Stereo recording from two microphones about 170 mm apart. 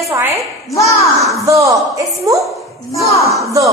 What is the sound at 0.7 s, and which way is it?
Speech, 20° left (ahead or behind).